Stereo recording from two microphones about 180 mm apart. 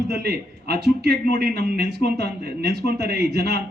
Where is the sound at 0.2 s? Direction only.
60° right (ahead or behind).